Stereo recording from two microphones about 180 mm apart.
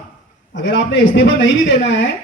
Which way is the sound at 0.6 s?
75° left (ahead or behind).